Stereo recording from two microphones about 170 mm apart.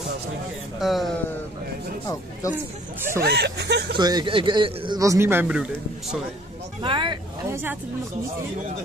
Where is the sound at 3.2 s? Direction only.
75° right (ahead or behind).